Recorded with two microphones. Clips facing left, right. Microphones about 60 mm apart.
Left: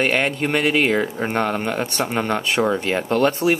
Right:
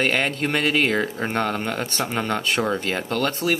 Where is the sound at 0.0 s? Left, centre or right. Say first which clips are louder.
Left 2 dB; centre.